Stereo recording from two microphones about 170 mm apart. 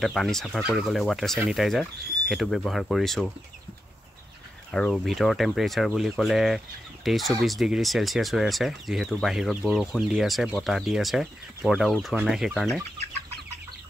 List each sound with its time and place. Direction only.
0.0 s speech: centre (ahead or behind)
4.6 s speech: centre (ahead or behind)